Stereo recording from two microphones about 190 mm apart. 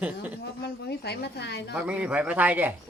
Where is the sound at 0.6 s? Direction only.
60° left (ahead or behind).